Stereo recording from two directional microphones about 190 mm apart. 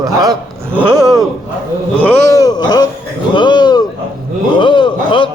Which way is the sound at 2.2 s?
20° left (ahead or behind).